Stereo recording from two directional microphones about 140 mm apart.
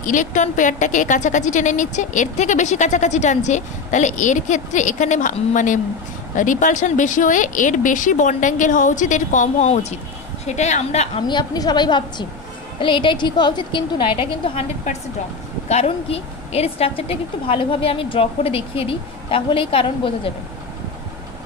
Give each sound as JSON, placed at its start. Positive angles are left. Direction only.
{"t": 0.0, "sound": "a woman's voice", "side_deg": 65}
{"t": 11.2, "sound": "a woman's voice", "side_deg": 30}